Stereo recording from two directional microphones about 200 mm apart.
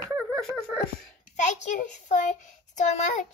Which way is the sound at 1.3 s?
40° left (ahead or behind).